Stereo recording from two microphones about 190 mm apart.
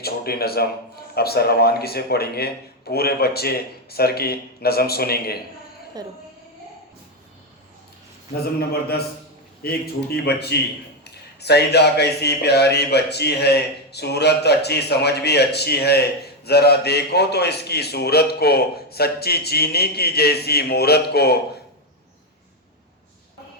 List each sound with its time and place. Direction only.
0.0 s a man's voice: 55° left (ahead or behind)
6.0 s a woman's voice: 20° right (ahead or behind)
9.6 s a man's voice: 55° left (ahead or behind)